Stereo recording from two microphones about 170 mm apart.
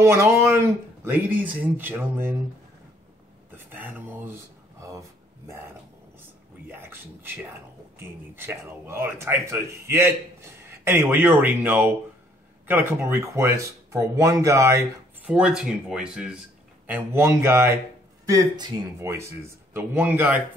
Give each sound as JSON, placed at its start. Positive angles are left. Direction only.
{"t": 0.0, "sound": "speech", "side_deg": -15}
{"t": 3.5, "sound": "a sound", "side_deg": -10}
{"t": 5.5, "sound": "speech", "side_deg": -15}
{"t": 6.7, "sound": "a sound", "side_deg": -15}
{"t": 8.0, "sound": "speech", "side_deg": -15}
{"t": 15.2, "sound": "speech", "side_deg": -5}